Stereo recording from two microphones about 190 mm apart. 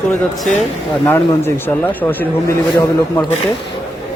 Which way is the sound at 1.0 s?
10° left (ahead or behind).